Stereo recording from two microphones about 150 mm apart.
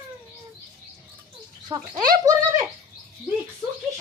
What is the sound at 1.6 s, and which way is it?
Speech, 25° right (ahead or behind).